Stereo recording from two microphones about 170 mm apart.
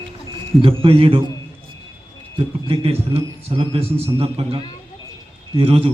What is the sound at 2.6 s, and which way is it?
A man's voice, 35° right (ahead or behind).